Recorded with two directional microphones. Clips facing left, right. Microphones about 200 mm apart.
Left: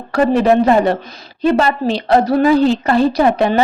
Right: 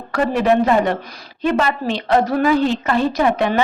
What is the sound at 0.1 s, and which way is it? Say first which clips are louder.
A woman's voice: left 4 dB; 35° left (ahead or behind).